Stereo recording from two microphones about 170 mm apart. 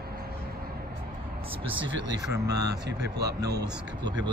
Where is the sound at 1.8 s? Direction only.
90° right.